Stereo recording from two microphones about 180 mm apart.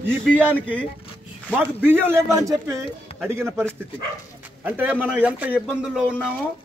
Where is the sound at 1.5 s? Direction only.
10° right (ahead or behind).